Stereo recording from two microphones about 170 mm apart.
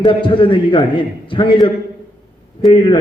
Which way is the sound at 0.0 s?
30° left (ahead or behind).